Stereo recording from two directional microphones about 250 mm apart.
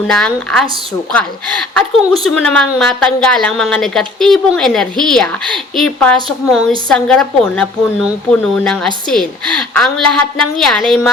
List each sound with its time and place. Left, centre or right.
0.1 s a woman's voice: centre
1.7 s a woman's voice: centre